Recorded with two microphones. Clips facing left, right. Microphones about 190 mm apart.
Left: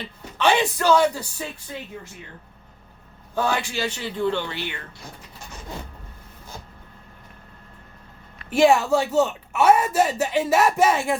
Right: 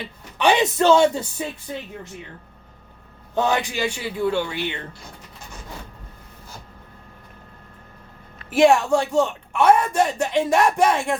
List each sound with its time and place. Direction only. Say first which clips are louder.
0.3 s speech: right 2 dB; 15° right (ahead or behind)
3.3 s a man's voice: right 3 dB; 20° right (ahead or behind)
8.4 s a woman's voice: right 1 dB; centre (ahead or behind)